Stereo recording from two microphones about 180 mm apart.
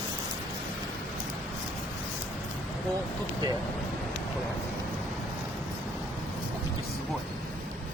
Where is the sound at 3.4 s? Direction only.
25° right (ahead or behind).